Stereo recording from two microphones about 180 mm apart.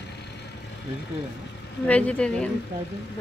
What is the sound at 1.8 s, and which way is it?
Speech, 5° left (ahead or behind).